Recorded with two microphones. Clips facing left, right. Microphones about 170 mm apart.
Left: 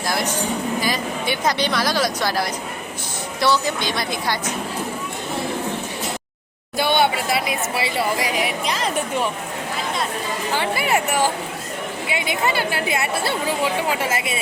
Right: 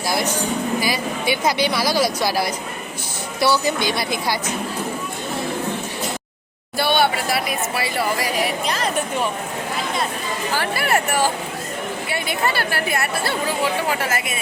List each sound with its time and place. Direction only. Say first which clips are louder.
0.8 s speech: right 1 dB; 10° right (ahead or behind)
6.7 s speech: even; 20° left (ahead or behind)
10.5 s speech: even; 20° left (ahead or behind)